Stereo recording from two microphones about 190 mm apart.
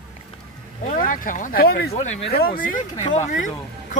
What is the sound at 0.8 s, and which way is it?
Speech, 45° left (ahead or behind).